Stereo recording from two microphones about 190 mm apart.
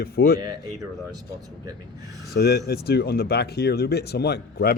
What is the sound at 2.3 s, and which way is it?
Speech, 60° left (ahead or behind).